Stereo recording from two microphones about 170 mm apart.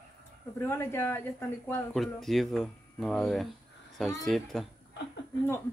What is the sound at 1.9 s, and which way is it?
Speech, centre (ahead or behind).